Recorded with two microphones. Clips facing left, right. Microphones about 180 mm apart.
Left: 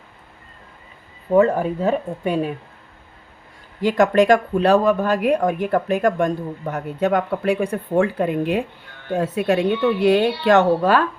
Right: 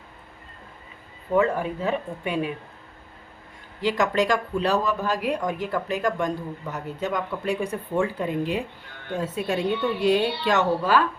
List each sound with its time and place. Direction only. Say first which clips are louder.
1.4 s speech: left 6 dB; 40° left (ahead or behind)
3.8 s speech: left 7 dB; 50° left (ahead or behind)